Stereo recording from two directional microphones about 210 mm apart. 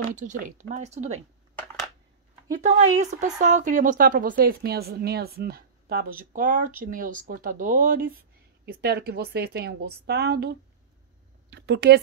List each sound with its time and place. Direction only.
0.1 s speech: 35° right (ahead or behind)
1.5 s crushing: 5° left (ahead or behind)
2.5 s a woman's voice: 35° right (ahead or behind); by 12.0 s 50° right (ahead or behind)